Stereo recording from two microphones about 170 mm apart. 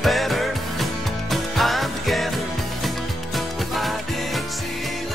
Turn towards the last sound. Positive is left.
turn(degrees=0)  # may be behind; listen again after turning